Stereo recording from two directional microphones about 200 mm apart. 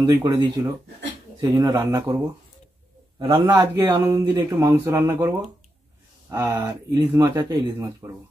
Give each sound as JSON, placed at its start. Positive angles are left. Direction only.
{"t": 0.0, "sound": "a man's voice", "side_deg": -20}